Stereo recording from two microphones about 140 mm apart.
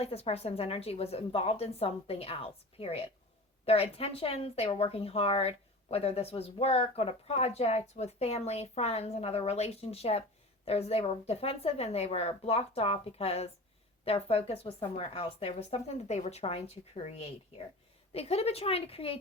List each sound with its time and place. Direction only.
0.0 s speech: 45° left (ahead or behind)